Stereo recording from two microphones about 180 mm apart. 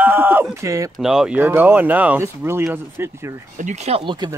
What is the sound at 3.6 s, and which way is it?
Speech, 40° right (ahead or behind).